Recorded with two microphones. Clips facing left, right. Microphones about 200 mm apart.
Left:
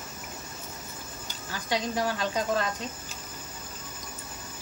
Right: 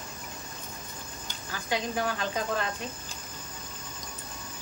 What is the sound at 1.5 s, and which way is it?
Speech, 35° left (ahead or behind).